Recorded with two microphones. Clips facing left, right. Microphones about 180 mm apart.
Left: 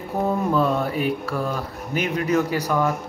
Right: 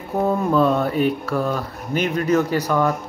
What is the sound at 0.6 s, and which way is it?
Speech, 10° left (ahead or behind).